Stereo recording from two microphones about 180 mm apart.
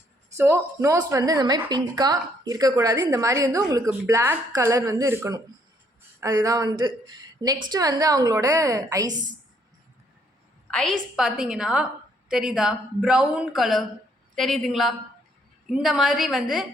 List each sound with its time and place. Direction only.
0.3 s a woman's voice: 15° right (ahead or behind)
10.7 s a woman's voice: 5° left (ahead or behind)